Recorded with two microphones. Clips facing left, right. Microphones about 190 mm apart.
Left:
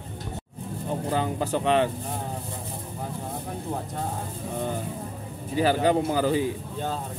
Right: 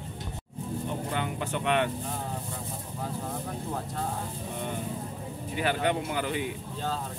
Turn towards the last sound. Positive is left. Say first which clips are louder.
# left 7 dB
turn(degrees=35)  # may be behind; listen again after turning